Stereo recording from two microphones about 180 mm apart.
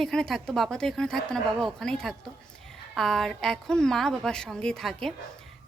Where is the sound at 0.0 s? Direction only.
Centre (ahead or behind).